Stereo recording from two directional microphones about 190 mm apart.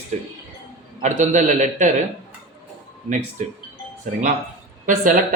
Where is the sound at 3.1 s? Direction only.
40° right (ahead or behind).